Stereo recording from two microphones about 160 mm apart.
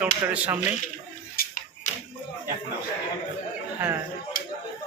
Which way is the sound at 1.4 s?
60° left (ahead or behind).